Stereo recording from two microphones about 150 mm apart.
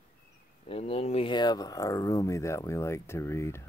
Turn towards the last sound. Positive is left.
turn(degrees=20)  # may be behind; listen again after turning